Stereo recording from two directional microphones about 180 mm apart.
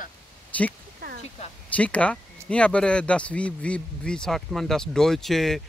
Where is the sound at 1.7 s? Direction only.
5° left (ahead or behind).